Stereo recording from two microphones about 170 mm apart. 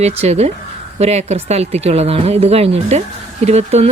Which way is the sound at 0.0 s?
40° right (ahead or behind).